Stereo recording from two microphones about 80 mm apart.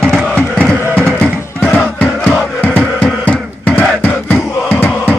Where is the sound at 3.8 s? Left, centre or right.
Left.